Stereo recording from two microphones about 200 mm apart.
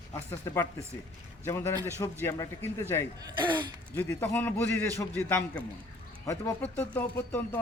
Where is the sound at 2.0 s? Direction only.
15° left (ahead or behind).